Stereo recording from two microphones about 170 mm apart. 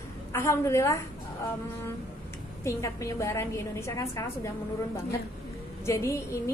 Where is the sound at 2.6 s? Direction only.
15° left (ahead or behind).